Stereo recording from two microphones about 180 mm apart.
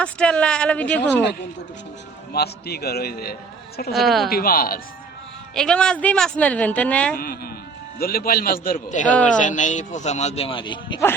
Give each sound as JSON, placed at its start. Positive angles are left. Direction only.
{"t": 0.0, "sound": "speech", "side_deg": 5}
{"t": 2.3, "sound": "a man's voice", "side_deg": 60}
{"t": 3.9, "sound": "speech", "side_deg": 0}
{"t": 4.3, "sound": "a man's voice", "side_deg": 55}
{"t": 5.5, "sound": "speech", "side_deg": 5}
{"t": 7.2, "sound": "a man's voice", "side_deg": 55}